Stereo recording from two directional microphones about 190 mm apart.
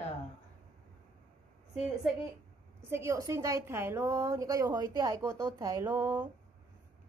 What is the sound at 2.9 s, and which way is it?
A woman's voice, 15° right (ahead or behind).